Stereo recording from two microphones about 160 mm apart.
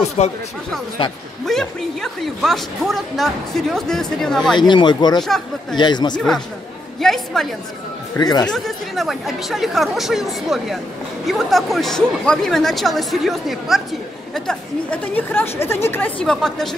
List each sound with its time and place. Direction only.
0.2 s speech: 40° left (ahead or behind)
1.4 s a woman's voice: centre (ahead or behind)
4.6 s speech: 30° left (ahead or behind)
5.2 s a woman's voice: centre (ahead or behind)
5.8 s speech: 30° left (ahead or behind)
6.1 s a woman's voice: 5° left (ahead or behind)
8.2 s speech: 25° left (ahead or behind)
8.5 s a woman's voice: centre (ahead or behind)